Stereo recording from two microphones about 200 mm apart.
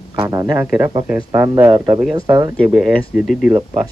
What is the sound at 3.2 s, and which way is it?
Speech, 45° left (ahead or behind).